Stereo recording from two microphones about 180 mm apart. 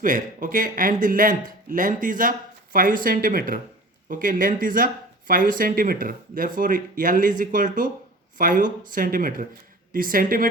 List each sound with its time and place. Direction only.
0.0 s speech: 50° right (ahead or behind)